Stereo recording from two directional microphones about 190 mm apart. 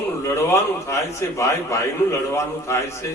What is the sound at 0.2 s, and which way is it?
A man's voice, 15° left (ahead or behind).